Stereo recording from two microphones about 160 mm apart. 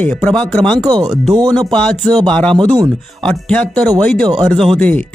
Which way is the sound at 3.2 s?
5° left (ahead or behind).